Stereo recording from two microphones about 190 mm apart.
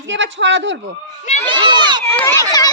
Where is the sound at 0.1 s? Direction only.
75° right (ahead or behind).